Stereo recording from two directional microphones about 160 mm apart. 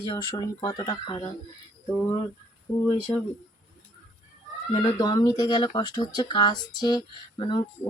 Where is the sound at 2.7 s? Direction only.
25° left (ahead or behind).